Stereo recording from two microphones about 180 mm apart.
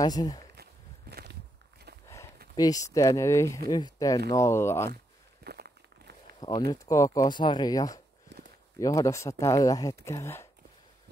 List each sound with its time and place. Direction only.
0.0 s speech: 20° left (ahead or behind)
1.1 s walk: 65° right (ahead or behind)
2.0 s a sound: 15° left (ahead or behind)
2.5 s speech: 20° left (ahead or behind)
5.4 s walk: 60° right (ahead or behind)
6.7 s speech: 20° left (ahead or behind)